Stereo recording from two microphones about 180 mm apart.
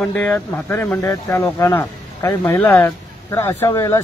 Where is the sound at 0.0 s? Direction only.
5° left (ahead or behind).